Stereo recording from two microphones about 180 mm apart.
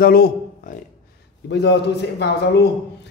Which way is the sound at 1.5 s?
70° left (ahead or behind).